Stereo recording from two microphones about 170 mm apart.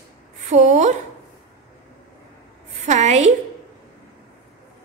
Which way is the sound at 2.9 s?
40° right (ahead or behind).